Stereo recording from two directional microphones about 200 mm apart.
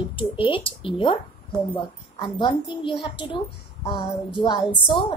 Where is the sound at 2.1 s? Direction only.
25° left (ahead or behind).